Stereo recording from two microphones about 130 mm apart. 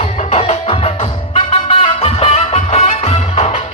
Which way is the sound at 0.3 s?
50° left (ahead or behind).